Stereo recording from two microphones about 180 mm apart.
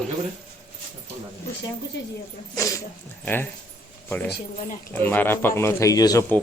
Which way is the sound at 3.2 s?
10° left (ahead or behind).